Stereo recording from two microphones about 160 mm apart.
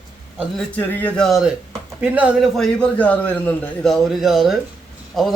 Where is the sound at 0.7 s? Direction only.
10° left (ahead or behind).